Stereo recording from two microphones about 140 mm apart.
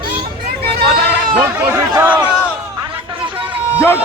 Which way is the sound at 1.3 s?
10° right (ahead or behind).